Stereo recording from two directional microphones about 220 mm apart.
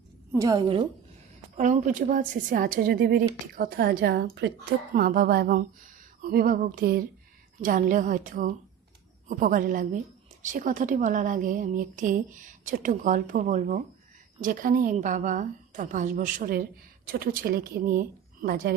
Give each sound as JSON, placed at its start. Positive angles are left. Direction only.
{"t": 0.3, "sound": "a woman's voice", "side_deg": -15}
{"t": 1.5, "sound": "a woman's voice", "side_deg": -35}